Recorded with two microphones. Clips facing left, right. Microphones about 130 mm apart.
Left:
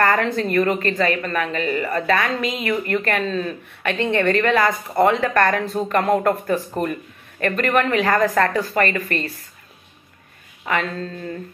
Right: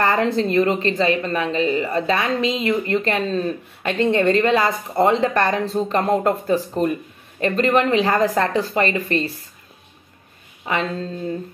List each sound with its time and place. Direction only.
0.0 s a woman's voice: 25° right (ahead or behind)
10.7 s a woman's voice: 25° right (ahead or behind)